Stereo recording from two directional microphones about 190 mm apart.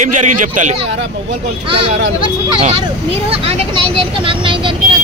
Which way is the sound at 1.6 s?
30° right (ahead or behind).